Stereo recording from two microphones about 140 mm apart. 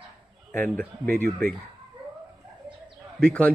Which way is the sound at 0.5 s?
10° left (ahead or behind).